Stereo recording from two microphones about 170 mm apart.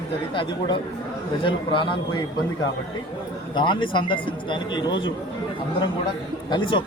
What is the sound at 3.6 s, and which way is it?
Speech, 30° left (ahead or behind).